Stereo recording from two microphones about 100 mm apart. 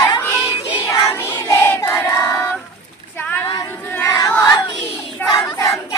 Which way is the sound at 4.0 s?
35° left (ahead or behind).